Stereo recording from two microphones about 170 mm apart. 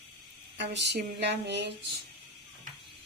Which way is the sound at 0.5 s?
90° right.